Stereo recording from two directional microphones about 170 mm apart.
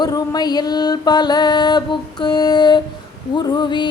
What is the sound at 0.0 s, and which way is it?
Mantra, 25° left (ahead or behind).